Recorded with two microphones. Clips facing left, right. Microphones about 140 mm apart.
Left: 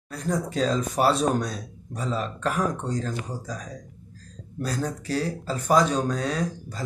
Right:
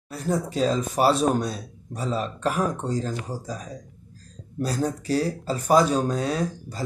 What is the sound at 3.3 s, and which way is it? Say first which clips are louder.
Speech: right 2 dB; 35° right (ahead or behind).